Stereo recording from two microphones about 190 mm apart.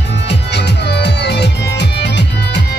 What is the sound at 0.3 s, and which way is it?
Music, 60° left (ahead or behind).